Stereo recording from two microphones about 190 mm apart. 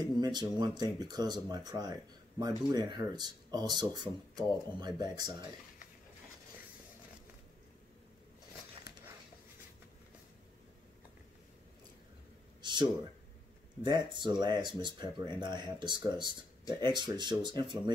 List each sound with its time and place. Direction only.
0.0 s speech: 20° right (ahead or behind)
12.6 s a sound: 25° right (ahead or behind)
13.8 s speech: 25° right (ahead or behind)